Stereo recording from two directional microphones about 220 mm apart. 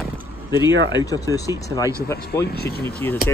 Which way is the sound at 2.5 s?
45° left (ahead or behind).